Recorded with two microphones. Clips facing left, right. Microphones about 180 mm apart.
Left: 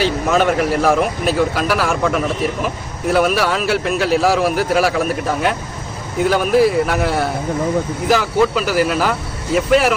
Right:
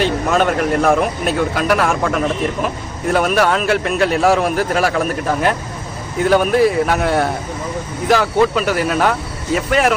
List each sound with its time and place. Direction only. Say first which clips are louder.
0.0 s speech: even; 5° left (ahead or behind)